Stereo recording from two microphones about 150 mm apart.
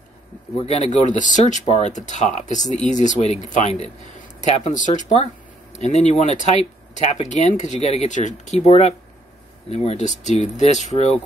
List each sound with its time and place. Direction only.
0.6 s speech: 45° left (ahead or behind)